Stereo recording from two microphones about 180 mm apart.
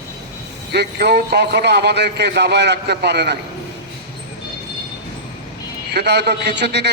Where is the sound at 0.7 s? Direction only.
65° right (ahead or behind).